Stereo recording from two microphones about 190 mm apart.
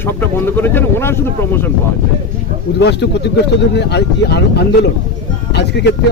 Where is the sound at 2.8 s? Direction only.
65° left (ahead or behind).